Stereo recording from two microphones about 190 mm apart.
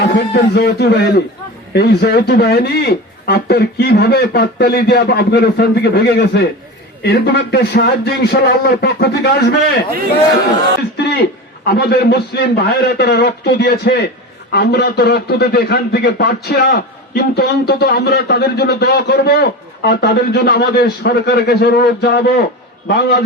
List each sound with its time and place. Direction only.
0.0 s a man's voice: 60° left (ahead or behind)
11.6 s a man's voice: 55° left (ahead or behind)